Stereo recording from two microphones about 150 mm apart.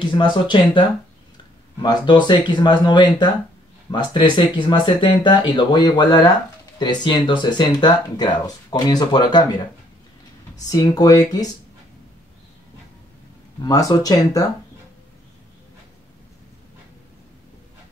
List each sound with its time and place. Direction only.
0.0 s speech: 30° left (ahead or behind)
10.7 s speech: 25° left (ahead or behind)
13.6 s speech: 25° left (ahead or behind)